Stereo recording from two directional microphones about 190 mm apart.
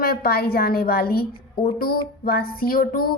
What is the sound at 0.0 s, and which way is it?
Speech, 50° left (ahead or behind).